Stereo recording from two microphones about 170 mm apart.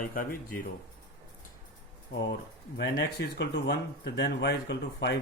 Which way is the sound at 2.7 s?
70° left (ahead or behind).